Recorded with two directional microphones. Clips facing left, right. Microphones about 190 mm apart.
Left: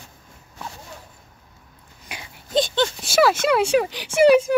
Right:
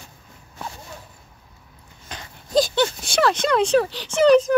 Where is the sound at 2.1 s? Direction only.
10° left (ahead or behind).